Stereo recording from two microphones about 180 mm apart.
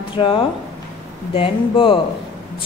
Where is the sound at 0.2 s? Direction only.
30° left (ahead or behind).